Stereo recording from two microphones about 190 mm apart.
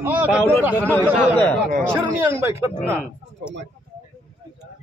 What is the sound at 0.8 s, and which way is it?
Speech, 10° left (ahead or behind).